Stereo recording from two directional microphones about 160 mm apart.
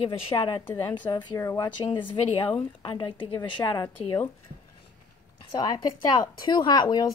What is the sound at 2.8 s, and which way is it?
A woman's voice, 30° left (ahead or behind).